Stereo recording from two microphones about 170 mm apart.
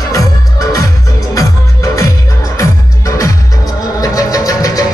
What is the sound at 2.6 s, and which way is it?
Music, 20° left (ahead or behind).